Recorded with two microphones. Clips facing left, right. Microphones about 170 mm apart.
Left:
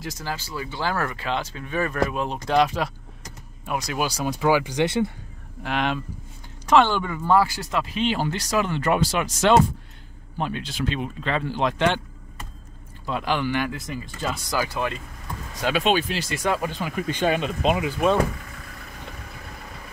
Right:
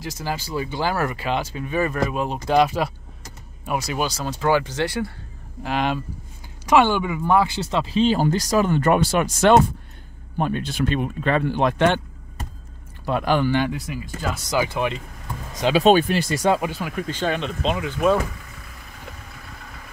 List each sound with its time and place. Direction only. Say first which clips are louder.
0.0 s speech: right 2 dB; centre (ahead or behind)
0.3 s speech: right 6 dB; 15° right (ahead or behind)
4.0 s speech: left 3 dB; 10° left (ahead or behind)
5.6 s speech: right 2 dB; centre (ahead or behind); by 13.5 s 50° right (ahead or behind)
13.5 s speech: right 4 dB; 25° right (ahead or behind)
13.7 s speech: right 1 dB; 5° right (ahead or behind)
14.5 s speech: right 5 dB; 20° right (ahead or behind)
15.8 s speech: right 9 dB; 45° right (ahead or behind)
16.3 s speech: right 4 dB; 30° right (ahead or behind)
16.6 s speech: right 1 dB; 10° right (ahead or behind)
17.1 s speech: left 3 dB; 10° left (ahead or behind)